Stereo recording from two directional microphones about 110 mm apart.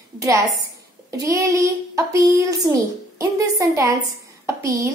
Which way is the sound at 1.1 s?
30° right (ahead or behind).